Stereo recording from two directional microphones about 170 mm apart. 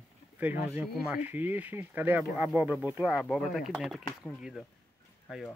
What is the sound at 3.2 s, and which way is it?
Speech, centre (ahead or behind).